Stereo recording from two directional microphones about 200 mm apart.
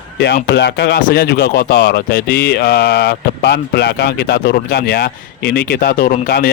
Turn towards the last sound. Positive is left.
turn(degrees=50)  # may be behind; listen again after turning